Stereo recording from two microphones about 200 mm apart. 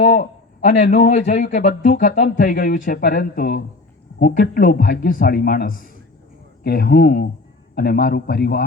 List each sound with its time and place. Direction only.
0.0 s a man's voice: 30° left (ahead or behind)
1.4 s speech: 50° left (ahead or behind)